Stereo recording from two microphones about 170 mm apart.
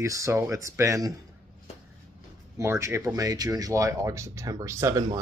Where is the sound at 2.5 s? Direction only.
15° right (ahead or behind).